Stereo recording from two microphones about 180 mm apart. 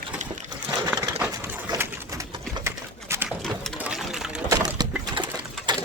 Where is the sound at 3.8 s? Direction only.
5° right (ahead or behind).